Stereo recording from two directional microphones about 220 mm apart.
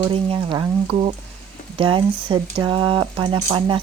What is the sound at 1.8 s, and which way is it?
Speech, 25° right (ahead or behind).